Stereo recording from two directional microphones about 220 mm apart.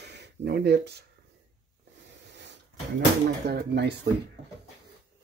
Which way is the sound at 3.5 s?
50° right (ahead or behind).